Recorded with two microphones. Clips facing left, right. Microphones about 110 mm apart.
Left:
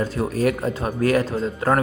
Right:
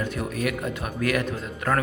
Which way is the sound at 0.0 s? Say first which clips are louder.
Left 6 dB; 35° left (ahead or behind).